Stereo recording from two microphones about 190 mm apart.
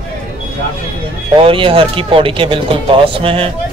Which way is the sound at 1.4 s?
30° right (ahead or behind).